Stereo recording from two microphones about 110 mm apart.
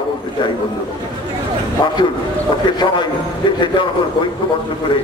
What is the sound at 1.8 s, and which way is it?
A man's voice, 50° left (ahead or behind).